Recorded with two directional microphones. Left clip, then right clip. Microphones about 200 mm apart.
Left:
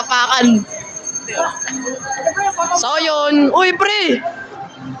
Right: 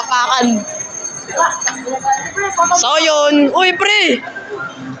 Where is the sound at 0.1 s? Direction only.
25° left (ahead or behind).